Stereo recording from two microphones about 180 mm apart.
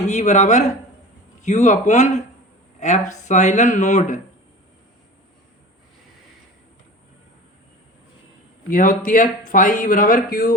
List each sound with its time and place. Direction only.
0.0 s speech: 40° left (ahead or behind)
8.7 s speech: 50° left (ahead or behind)